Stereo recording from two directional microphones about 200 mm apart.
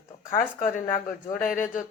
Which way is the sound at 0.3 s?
40° left (ahead or behind).